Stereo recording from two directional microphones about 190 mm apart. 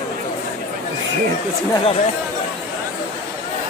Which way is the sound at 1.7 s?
30° left (ahead or behind).